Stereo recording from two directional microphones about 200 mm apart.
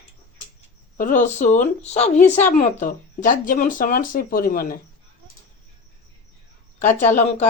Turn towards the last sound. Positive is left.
turn(degrees=35)  # may be behind; listen again after turning